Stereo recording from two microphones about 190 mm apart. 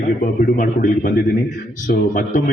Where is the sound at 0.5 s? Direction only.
45° left (ahead or behind).